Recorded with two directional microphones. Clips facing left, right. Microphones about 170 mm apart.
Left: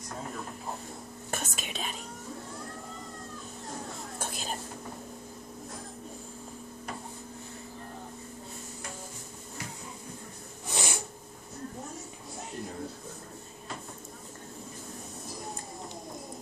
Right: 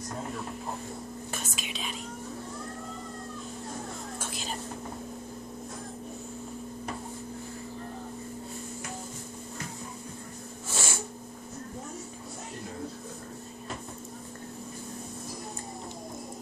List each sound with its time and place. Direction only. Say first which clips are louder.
1.3 s speech: left 6 dB; 50° left (ahead or behind)
4.2 s whispering: left 3 dB; 50° left (ahead or behind)
10.7 s a sound: left 1 dB; 15° left (ahead or behind)